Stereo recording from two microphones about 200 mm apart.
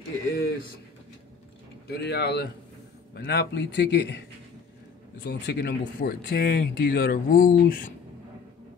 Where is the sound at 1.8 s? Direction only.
50° left (ahead or behind).